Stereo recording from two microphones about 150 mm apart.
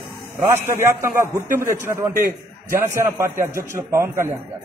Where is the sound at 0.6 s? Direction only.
15° right (ahead or behind).